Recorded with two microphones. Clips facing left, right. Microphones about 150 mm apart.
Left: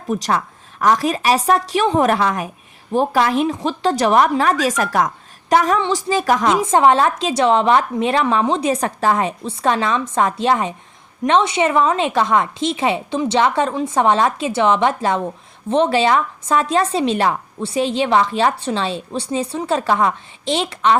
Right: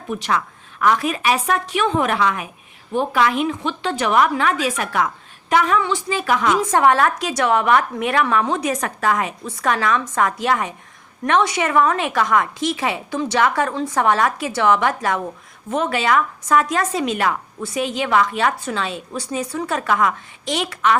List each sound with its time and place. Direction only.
0.1 s a woman's voice: 40° left (ahead or behind)
6.7 s a woman's voice: 25° left (ahead or behind)